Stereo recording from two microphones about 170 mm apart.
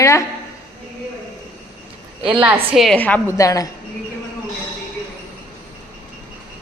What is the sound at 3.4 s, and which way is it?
Speech, 20° left (ahead or behind).